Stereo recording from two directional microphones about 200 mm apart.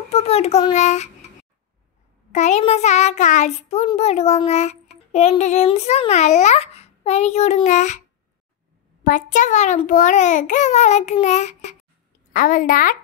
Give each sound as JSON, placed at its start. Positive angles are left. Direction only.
{"t": 0.1, "sound": "a child's voice", "side_deg": 30}
{"t": 2.3, "sound": "a child's voice", "side_deg": 35}
{"t": 9.0, "sound": "a child's voice", "side_deg": 40}